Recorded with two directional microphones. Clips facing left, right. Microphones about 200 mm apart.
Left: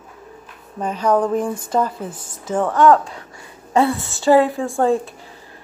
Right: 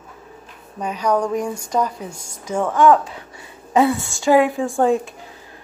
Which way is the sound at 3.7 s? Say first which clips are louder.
Right 1 dB; 15° right (ahead or behind).